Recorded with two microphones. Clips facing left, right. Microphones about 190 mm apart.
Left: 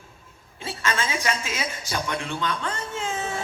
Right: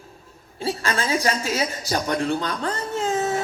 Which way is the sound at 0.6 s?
35° right (ahead or behind).